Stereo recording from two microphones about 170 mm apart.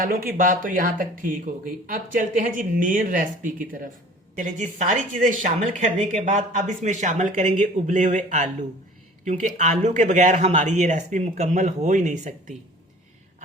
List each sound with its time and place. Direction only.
0.0 s speech: 55° right (ahead or behind)